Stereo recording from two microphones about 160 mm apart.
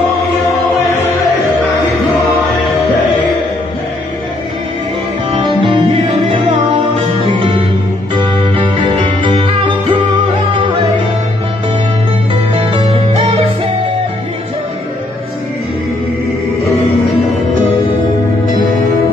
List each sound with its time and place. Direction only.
5.3 s music: 30° right (ahead or behind)
12.5 s music: 35° right (ahead or behind)